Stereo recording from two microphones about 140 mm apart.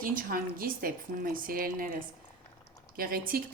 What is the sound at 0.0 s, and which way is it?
A woman's voice, 85° right.